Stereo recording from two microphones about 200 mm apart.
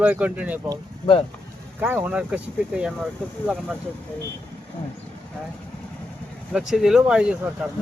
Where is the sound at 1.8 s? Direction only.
10° right (ahead or behind).